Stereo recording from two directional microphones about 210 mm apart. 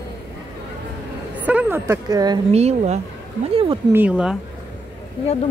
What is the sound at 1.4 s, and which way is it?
Speech, 10° right (ahead or behind).